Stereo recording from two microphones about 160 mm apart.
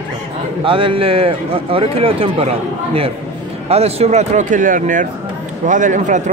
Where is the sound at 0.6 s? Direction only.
35° right (ahead or behind).